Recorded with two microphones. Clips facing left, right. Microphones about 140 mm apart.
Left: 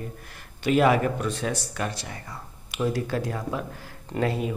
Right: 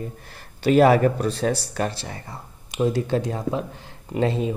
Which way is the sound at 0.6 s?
35° right (ahead or behind).